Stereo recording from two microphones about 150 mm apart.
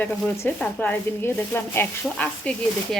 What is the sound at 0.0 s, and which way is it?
Speech, 10° left (ahead or behind).